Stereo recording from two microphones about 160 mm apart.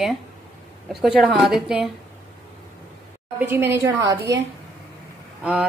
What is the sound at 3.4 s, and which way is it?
Speech, 15° right (ahead or behind).